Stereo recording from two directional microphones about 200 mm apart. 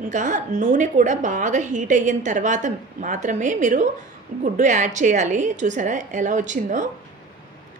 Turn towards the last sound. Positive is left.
turn(degrees=-40)  # may be behind; listen again after turning